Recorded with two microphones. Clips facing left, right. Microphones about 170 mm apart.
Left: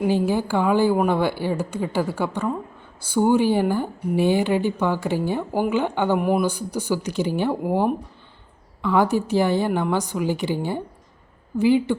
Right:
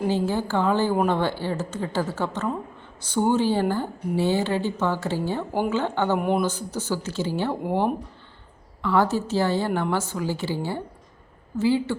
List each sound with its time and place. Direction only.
0.0 s a woman's voice: 15° left (ahead or behind)
6.1 s a woman's voice: 5° left (ahead or behind)